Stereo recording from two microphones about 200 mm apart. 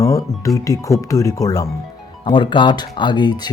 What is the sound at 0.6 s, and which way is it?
Speech, 15° left (ahead or behind).